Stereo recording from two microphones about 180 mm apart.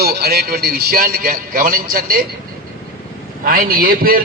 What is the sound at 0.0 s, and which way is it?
A man's voice, 60° right (ahead or behind).